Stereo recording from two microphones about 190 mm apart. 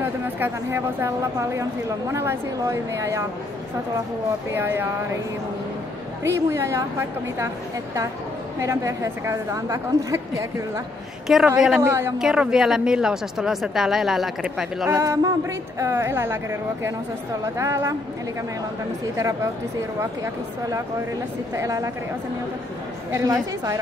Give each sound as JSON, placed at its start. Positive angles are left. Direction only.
{"t": 0.4, "sound": "a woman's voice", "side_deg": -15}
{"t": 4.6, "sound": "a woman's voice", "side_deg": -10}
{"t": 6.5, "sound": "a woman's voice", "side_deg": -15}
{"t": 8.5, "sound": "a woman's voice", "side_deg": -15}
{"t": 11.2, "sound": "speech", "side_deg": 0}
{"t": 11.6, "sound": "a woman's voice", "side_deg": -10}
{"t": 14.9, "sound": "a woman's voice", "side_deg": -15}
{"t": 19.1, "sound": "a woman's voice", "side_deg": -15}
{"t": 21.5, "sound": "a woman's voice", "side_deg": -15}
{"t": 23.1, "sound": "a woman's voice", "side_deg": -15}